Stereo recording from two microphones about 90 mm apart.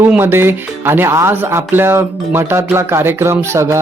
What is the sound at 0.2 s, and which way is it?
Speech, 25° right (ahead or behind).